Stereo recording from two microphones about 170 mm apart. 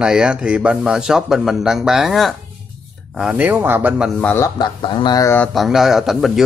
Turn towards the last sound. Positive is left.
turn(degrees=0)  # may be behind; listen again after turning